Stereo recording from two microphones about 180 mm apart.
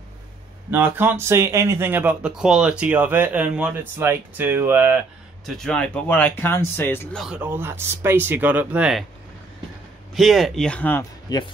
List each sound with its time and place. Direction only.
0.7 s speech: 10° right (ahead or behind)
5.4 s speech: 5° left (ahead or behind)
7.2 s speech: 5° right (ahead or behind)
10.1 s speech: centre (ahead or behind)
11.3 s speech: 25° left (ahead or behind)